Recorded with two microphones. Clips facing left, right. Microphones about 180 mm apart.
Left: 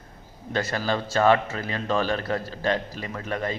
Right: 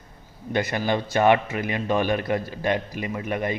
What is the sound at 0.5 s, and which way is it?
A man's voice, 15° right (ahead or behind).